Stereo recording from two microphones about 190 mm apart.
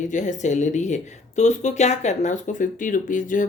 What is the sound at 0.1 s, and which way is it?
Speech, 40° left (ahead or behind).